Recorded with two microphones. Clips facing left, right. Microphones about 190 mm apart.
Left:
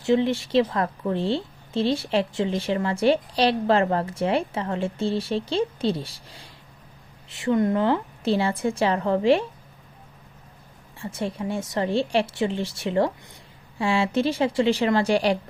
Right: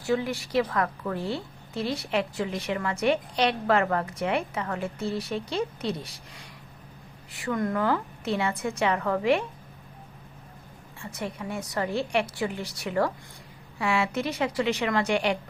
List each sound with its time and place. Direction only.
0.0 s a woman's voice: 25° left (ahead or behind)
11.0 s a woman's voice: 30° left (ahead or behind)